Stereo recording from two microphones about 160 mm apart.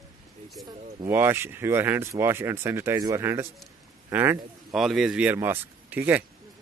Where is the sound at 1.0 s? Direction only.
15° right (ahead or behind).